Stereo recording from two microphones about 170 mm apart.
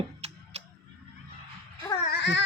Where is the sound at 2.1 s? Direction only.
90° left.